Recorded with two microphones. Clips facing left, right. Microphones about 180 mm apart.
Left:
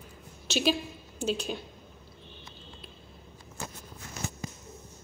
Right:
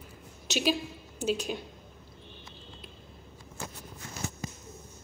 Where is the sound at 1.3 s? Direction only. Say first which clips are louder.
Right 1 dB; 10° right (ahead or behind).